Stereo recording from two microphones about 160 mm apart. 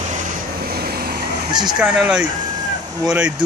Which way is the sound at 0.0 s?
50° right (ahead or behind).